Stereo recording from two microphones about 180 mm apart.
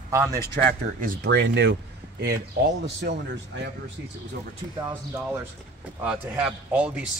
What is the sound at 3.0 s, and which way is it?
Speech, 70° right (ahead or behind).